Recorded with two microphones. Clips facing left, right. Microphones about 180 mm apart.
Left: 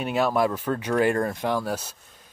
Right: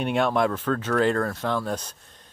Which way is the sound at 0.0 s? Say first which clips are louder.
Even; 5° left (ahead or behind).